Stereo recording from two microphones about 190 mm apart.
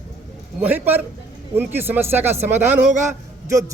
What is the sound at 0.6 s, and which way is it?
A man's voice, 10° right (ahead or behind).